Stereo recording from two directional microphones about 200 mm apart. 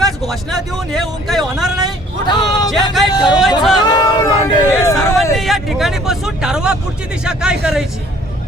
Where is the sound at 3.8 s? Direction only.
20° left (ahead or behind).